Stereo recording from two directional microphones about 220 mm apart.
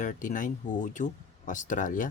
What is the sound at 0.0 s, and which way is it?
Speech, 35° left (ahead or behind).